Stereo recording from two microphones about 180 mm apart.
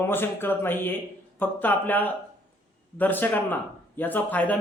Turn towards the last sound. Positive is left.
turn(degrees=10)  # may be behind; listen again after turning